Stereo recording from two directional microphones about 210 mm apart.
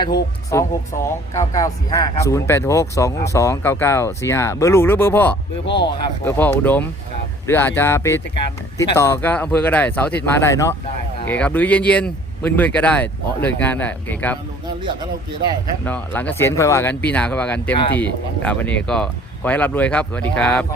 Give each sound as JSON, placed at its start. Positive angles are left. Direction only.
{"t": 0.0, "sound": "speech", "side_deg": 20}
{"t": 15.8, "sound": "speech", "side_deg": 10}